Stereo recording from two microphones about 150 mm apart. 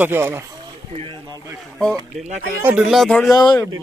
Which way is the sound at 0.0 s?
15° right (ahead or behind).